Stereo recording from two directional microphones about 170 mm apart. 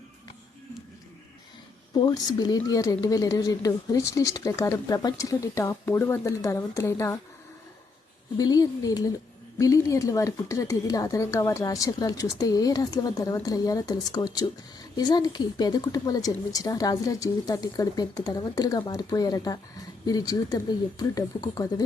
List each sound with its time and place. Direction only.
2.0 s a woman's voice: 25° left (ahead or behind)
8.4 s a woman's voice: 20° left (ahead or behind)